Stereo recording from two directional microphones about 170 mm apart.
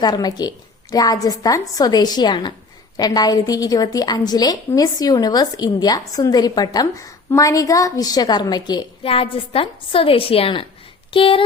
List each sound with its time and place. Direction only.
0.0 s a woman's voice: 25° left (ahead or behind)